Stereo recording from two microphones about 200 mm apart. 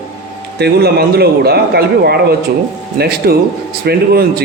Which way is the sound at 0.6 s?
50° right (ahead or behind).